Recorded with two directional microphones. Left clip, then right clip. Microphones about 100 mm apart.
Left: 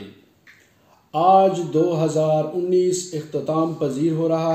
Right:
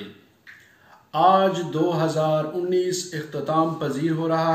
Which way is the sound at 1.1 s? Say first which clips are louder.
Left 2 dB; 40° left (ahead or behind).